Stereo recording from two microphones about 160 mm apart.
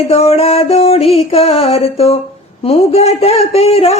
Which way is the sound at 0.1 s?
40° left (ahead or behind).